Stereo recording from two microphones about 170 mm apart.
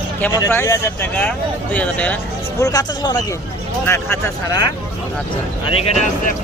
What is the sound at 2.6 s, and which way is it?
A man's voice, 20° left (ahead or behind).